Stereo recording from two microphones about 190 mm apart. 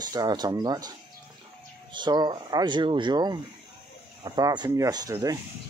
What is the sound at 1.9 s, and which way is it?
Speech, 25° right (ahead or behind).